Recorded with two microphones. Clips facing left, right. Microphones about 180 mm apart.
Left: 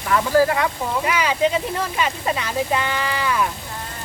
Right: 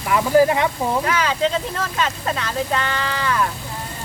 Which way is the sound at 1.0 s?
10° left (ahead or behind).